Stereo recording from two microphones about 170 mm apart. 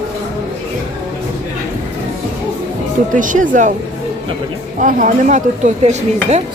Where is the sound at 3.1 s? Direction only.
50° right (ahead or behind).